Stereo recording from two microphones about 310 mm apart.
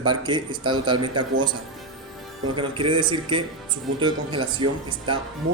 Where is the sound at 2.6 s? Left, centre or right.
Centre.